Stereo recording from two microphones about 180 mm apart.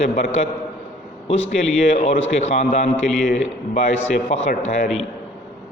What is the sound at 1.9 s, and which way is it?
A man's voice, 40° left (ahead or behind).